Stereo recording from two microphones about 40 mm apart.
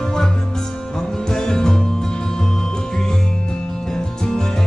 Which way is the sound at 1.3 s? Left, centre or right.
Centre.